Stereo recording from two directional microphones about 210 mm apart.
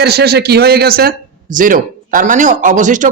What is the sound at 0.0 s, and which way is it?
A man's voice, 50° right (ahead or behind).